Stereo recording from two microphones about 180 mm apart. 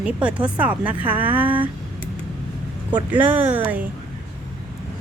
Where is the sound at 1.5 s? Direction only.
30° right (ahead or behind).